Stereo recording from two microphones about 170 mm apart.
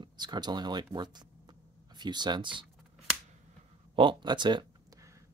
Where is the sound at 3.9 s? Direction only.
30° right (ahead or behind).